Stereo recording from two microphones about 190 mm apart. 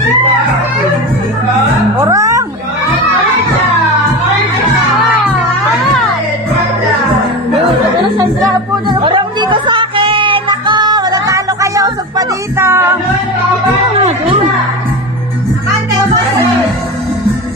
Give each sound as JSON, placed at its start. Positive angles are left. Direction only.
{"t": 2.0, "sound": "music", "side_deg": -15}
{"t": 9.0, "sound": "music", "side_deg": -25}